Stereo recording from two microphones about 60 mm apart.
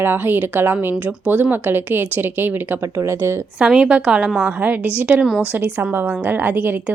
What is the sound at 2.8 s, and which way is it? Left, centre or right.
Speech, right.